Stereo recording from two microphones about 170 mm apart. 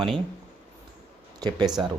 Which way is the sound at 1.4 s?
25° right (ahead or behind).